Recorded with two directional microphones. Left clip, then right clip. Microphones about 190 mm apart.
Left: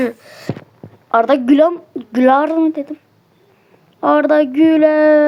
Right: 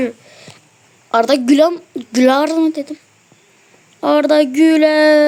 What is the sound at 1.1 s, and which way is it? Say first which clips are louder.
Speech: even; 25° right (ahead or behind).